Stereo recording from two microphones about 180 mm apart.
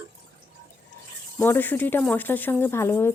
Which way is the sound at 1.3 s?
10° left (ahead or behind).